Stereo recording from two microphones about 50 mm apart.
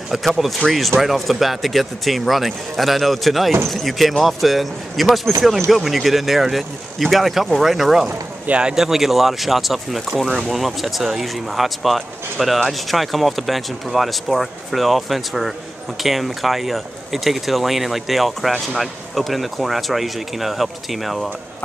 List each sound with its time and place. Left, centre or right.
0.1 s speech: centre
8.5 s a man's voice: centre
8.7 s speech: centre